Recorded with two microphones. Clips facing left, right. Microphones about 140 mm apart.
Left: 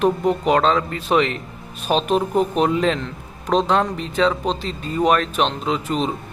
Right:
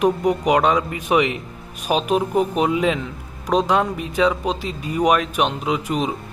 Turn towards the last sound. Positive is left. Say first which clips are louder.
# even
turn(degrees=-10)  # may be behind; listen again after turning